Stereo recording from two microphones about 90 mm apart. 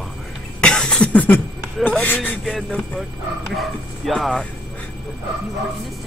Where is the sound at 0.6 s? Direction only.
10° left (ahead or behind).